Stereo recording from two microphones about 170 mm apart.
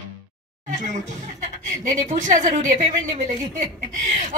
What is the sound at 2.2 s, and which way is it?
Speech, 45° right (ahead or behind).